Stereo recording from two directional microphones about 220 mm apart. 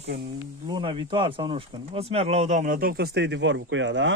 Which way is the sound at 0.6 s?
20° right (ahead or behind).